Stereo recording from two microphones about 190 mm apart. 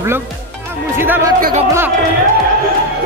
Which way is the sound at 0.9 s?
10° right (ahead or behind).